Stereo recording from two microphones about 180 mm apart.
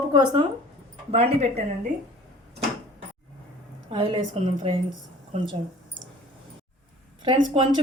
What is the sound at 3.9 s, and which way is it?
Speech, 30° right (ahead or behind).